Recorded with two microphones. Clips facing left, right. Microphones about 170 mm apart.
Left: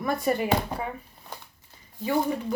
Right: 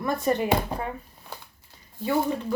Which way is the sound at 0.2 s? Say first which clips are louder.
Right 1 dB; 10° left (ahead or behind).